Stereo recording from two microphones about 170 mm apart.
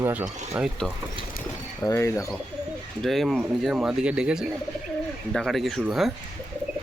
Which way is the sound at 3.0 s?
Centre (ahead or behind).